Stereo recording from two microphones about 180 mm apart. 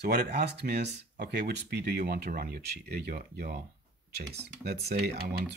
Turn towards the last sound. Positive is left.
turn(degrees=-60)  # may be behind; listen again after turning